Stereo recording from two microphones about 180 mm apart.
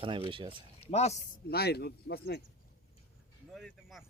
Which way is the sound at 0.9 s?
35° left (ahead or behind).